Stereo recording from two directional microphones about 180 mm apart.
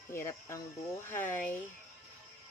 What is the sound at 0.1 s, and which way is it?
Speech, 15° left (ahead or behind).